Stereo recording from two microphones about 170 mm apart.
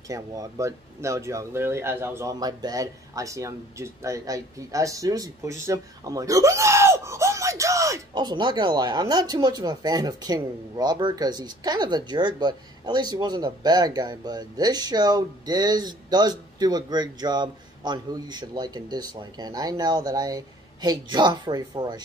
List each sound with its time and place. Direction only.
0.1 s speech: 20° right (ahead or behind)